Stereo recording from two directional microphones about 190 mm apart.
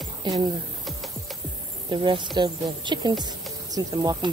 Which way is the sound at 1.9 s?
25° right (ahead or behind).